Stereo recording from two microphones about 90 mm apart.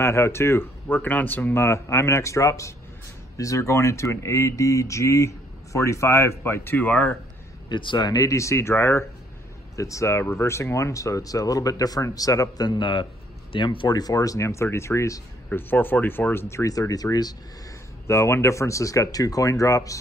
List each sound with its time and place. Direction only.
0.0 s speech: 30° left (ahead or behind)
1.6 s speech: 35° left (ahead or behind)
7.7 s speech: 60° left (ahead or behind)
8.1 s speech: 35° left (ahead or behind); by 13.8 s 70° left (ahead or behind)
13.8 s speech: 45° left (ahead or behind)
15.5 s speech: 20° left (ahead or behind); by 17.4 s 45° left (ahead or behind)
18.0 s speech: 30° left (ahead or behind)